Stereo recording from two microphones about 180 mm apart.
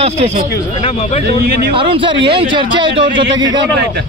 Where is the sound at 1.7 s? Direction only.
30° right (ahead or behind).